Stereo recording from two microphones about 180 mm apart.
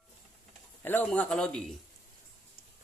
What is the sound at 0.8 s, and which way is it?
Speech, 10° left (ahead or behind).